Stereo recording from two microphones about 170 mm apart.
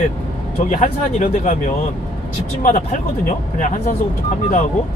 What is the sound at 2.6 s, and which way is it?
Speech, 45° left (ahead or behind).